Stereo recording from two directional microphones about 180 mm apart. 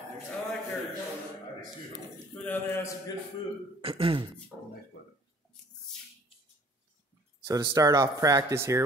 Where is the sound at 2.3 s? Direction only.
10° left (ahead or behind).